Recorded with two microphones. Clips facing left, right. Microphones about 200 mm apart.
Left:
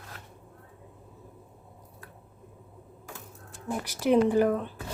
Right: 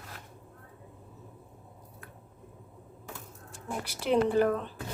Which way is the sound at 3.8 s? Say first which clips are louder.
Left 4 dB; 10° left (ahead or behind).